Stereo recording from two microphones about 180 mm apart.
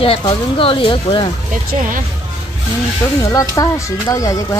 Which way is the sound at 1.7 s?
50° right (ahead or behind).